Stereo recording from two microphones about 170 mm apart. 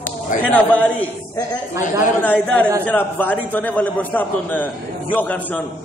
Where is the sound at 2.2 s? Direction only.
10° left (ahead or behind).